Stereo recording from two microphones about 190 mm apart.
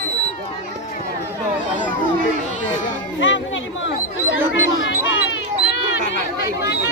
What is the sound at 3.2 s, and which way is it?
Chatter, 80° left.